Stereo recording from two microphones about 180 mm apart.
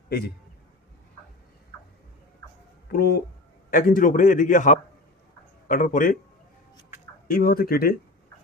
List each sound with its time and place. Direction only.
0.1 s speech: 65° left (ahead or behind)
2.9 s a man's voice: 60° left (ahead or behind)
7.3 s speech: 55° left (ahead or behind)